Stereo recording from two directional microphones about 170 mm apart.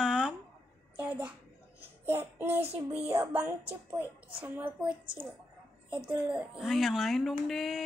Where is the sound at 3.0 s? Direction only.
15° right (ahead or behind).